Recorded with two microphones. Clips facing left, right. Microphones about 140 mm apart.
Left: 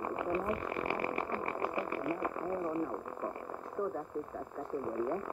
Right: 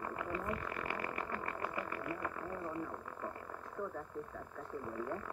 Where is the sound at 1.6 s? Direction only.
30° left (ahead or behind).